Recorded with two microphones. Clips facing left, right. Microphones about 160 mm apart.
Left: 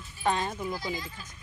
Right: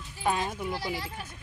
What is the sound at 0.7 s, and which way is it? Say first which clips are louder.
Speech: right 1 dB; 70° right (ahead or behind).